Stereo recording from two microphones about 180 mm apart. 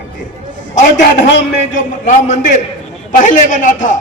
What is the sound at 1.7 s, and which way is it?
A man's voice, 45° left (ahead or behind).